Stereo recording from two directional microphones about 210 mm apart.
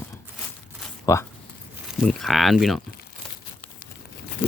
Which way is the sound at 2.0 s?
Centre (ahead or behind).